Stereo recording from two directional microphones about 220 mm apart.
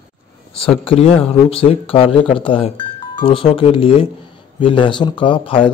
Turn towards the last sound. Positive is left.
turn(degrees=25)  # may be behind; listen again after turning